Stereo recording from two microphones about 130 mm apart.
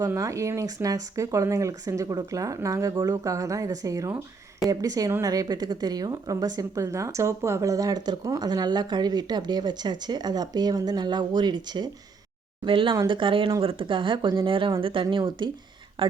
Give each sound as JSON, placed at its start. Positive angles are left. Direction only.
{"t": 0.1, "sound": "a woman's voice", "side_deg": -25}